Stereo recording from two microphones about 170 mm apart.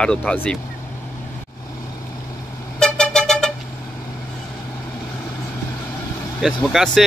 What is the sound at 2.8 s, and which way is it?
Vehicle, 5° left (ahead or behind).